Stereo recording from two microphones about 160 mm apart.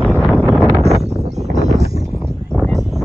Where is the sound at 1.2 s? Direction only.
45° right (ahead or behind).